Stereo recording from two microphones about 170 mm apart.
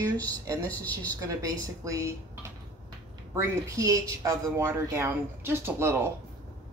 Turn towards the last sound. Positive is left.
turn(degrees=-15)  # may be behind; listen again after turning